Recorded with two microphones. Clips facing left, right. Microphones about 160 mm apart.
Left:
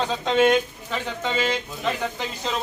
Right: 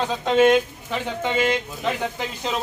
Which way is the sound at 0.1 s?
5° right (ahead or behind).